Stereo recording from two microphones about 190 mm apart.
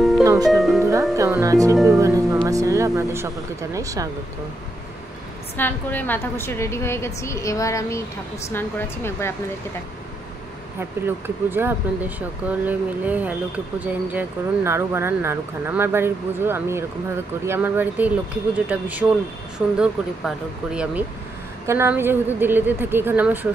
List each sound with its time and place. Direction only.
0.2 s music: 15° right (ahead or behind)
0.5 s speech: centre (ahead or behind)
1.1 s speech: 15° right (ahead or behind)
1.9 s music: 15° right (ahead or behind)
2.4 s speech: 15° right (ahead or behind)
5.6 s a woman's voice: 10° left (ahead or behind)
10.8 s speech: 10° right (ahead or behind)